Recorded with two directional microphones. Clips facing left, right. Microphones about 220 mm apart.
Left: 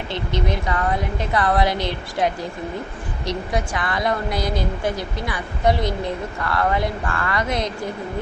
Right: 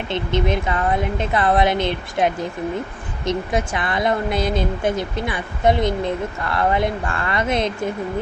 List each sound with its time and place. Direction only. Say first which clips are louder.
0.1 s speech: right 4 dB; 20° right (ahead or behind)